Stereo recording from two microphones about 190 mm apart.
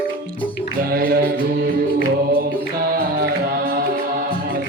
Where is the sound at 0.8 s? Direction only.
50° right (ahead or behind).